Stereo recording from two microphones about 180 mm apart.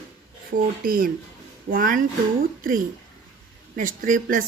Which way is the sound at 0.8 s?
50° right (ahead or behind).